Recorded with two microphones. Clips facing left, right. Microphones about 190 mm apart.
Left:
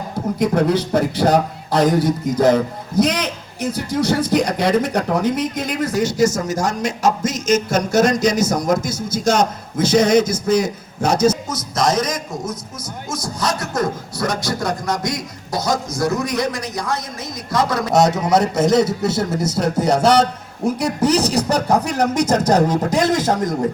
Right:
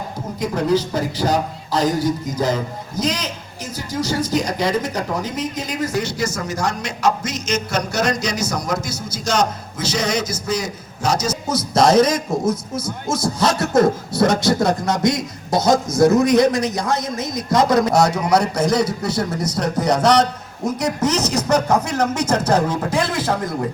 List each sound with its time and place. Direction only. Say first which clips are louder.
0.3 s a man's voice: left 2 dB; 60° left (ahead or behind)
11.4 s a man's voice: right 4 dB; 30° right (ahead or behind)
17.9 s a man's voice: left 1 dB; 20° left (ahead or behind); by 23.6 s 45° left (ahead or behind)